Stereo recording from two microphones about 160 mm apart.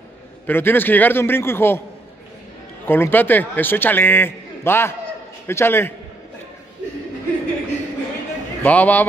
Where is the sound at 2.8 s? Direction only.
15° left (ahead or behind).